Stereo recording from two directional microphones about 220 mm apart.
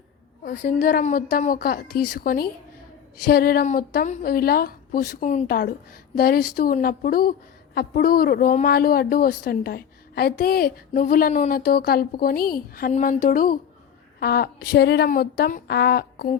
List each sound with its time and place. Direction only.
0.6 s a woman's voice: 40° left (ahead or behind)